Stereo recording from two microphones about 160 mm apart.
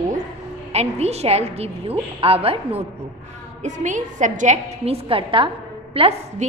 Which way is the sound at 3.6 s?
50° right (ahead or behind).